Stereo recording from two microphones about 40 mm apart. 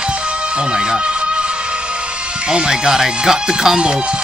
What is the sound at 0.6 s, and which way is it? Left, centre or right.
Music, right.